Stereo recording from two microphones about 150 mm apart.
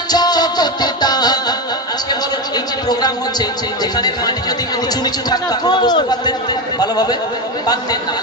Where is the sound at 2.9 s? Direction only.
25° left (ahead or behind).